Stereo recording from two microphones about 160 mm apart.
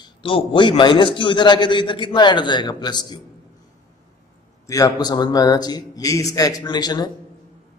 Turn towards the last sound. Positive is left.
turn(degrees=25)  # may be behind; listen again after turning